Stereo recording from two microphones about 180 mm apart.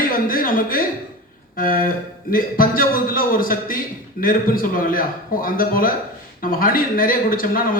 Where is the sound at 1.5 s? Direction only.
50° left (ahead or behind).